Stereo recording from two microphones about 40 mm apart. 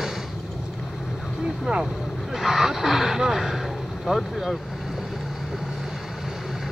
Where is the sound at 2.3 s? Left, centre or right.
Centre.